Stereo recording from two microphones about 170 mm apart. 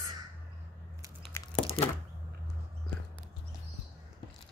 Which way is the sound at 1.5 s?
35° left (ahead or behind).